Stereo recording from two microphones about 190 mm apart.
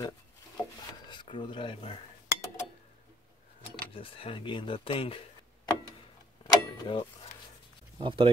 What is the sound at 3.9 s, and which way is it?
Speech, 30° left (ahead or behind).